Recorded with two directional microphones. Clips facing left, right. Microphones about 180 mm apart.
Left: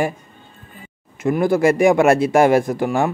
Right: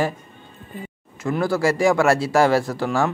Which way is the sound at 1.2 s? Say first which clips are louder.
Left 5 dB; 20° left (ahead or behind).